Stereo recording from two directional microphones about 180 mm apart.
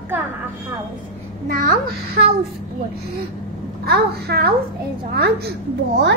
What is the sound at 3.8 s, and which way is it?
A child's voice, 60° right (ahead or behind).